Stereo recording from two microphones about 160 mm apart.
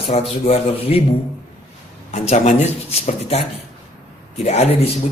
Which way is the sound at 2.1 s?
45° left (ahead or behind).